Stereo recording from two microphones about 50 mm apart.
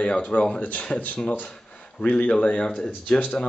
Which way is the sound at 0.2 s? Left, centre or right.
Left.